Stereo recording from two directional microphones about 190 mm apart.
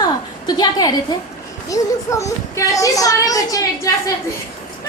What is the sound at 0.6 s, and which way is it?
A woman's voice, 20° left (ahead or behind).